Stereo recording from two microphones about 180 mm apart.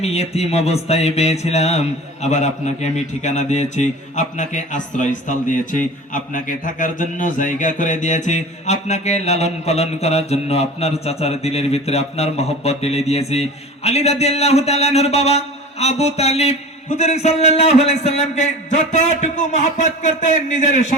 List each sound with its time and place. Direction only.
0.0 s speech: 35° left (ahead or behind)